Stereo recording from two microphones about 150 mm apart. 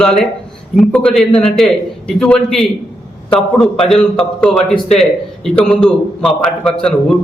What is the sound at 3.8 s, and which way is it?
A man's voice, 5° left (ahead or behind).